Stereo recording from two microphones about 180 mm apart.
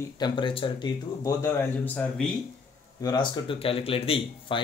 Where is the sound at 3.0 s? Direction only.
25° left (ahead or behind).